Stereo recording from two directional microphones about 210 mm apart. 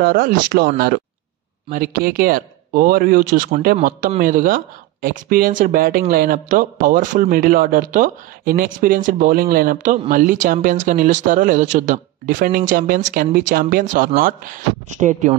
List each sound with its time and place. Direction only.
0.0 s speech: 45° right (ahead or behind)